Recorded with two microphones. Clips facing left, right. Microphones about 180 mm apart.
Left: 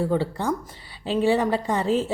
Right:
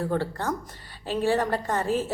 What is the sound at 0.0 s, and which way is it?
A woman's voice, 15° left (ahead or behind).